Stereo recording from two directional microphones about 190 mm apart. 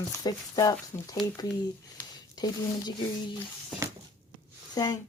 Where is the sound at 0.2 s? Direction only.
20° left (ahead or behind).